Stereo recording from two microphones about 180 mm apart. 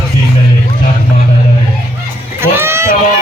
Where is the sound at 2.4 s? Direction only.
15° right (ahead or behind).